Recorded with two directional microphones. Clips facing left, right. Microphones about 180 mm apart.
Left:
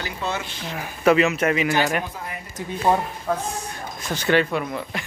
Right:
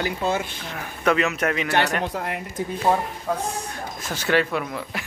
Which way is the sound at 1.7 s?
70° right (ahead or behind).